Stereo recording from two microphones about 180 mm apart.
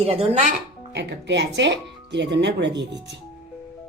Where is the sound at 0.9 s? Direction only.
70° right (ahead or behind).